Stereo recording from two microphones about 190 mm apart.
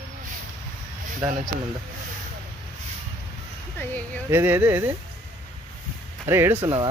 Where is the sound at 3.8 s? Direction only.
10° left (ahead or behind).